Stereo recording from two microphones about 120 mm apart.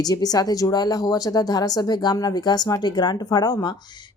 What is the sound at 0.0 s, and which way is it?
A man's voice, 35° left (ahead or behind).